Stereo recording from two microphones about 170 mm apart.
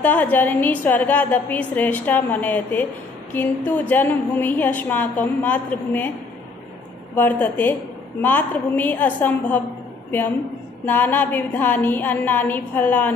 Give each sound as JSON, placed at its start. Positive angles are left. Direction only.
{"t": 0.0, "sound": "a woman's voice", "side_deg": 10}
{"t": 7.2, "sound": "a woman's voice", "side_deg": 10}
{"t": 10.9, "sound": "a woman's voice", "side_deg": 10}